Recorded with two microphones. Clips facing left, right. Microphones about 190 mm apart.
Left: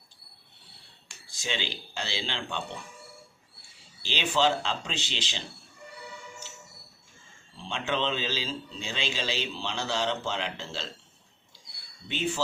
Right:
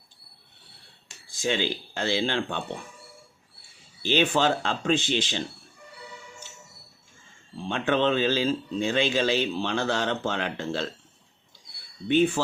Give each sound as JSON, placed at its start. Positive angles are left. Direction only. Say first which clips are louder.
{"t": 1.3, "sound": "speech", "louder": "right 8 dB", "side_deg": -50}
{"t": 4.0, "sound": "speech", "louder": "right 4 dB", "side_deg": -55}
{"t": 7.6, "sound": "speech", "louder": "right 6 dB", "side_deg": -55}
{"t": 12.0, "sound": "speech", "louder": "right 10 dB", "side_deg": -55}